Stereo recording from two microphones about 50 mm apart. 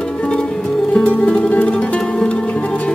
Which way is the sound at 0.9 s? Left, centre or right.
Left.